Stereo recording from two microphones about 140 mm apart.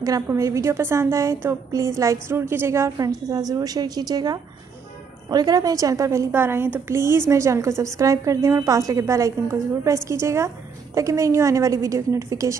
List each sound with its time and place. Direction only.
0.0 s a woman's voice: 25° right (ahead or behind)